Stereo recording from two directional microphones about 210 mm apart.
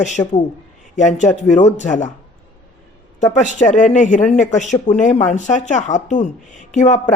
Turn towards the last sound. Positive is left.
turn(degrees=35)  # may be behind; listen again after turning